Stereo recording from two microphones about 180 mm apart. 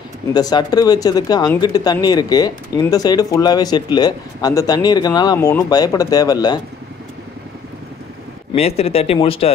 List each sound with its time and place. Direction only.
0.3 s speech: 20° left (ahead or behind)
8.5 s speech: 35° left (ahead or behind)